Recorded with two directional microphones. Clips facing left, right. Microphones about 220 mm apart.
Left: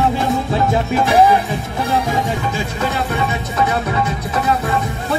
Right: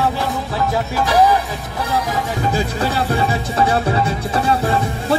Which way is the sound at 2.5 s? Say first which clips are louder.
Right 2 dB; 35° right (ahead or behind).